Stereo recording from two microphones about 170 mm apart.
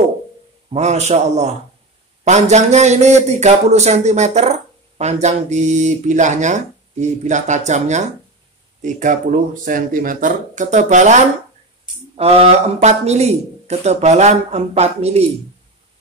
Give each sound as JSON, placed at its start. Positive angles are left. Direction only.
{"t": 0.7, "sound": "a man's voice", "side_deg": -40}